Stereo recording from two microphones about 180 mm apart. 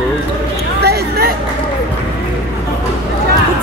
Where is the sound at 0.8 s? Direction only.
60° right (ahead or behind).